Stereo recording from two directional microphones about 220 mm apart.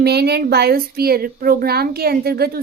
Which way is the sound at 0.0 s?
45° right (ahead or behind).